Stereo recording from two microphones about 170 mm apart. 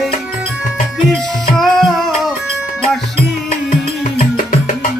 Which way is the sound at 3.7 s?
50° left (ahead or behind).